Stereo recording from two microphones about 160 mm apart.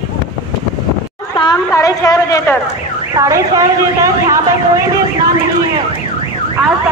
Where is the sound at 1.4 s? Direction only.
25° left (ahead or behind).